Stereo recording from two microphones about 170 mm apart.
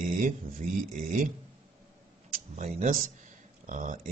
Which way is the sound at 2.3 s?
45° right (ahead or behind).